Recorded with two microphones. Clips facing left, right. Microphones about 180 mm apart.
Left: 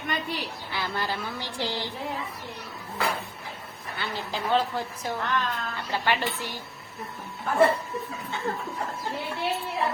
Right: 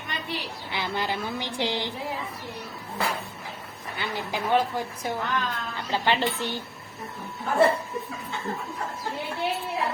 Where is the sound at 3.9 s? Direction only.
15° right (ahead or behind).